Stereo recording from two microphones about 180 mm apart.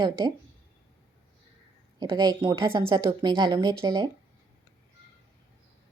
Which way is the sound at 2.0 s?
20° right (ahead or behind).